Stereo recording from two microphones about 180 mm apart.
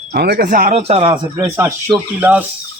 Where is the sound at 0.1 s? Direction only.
60° right (ahead or behind); by 1.2 s 35° right (ahead or behind).